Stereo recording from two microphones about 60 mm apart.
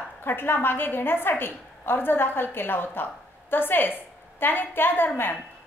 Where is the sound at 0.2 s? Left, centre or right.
Left.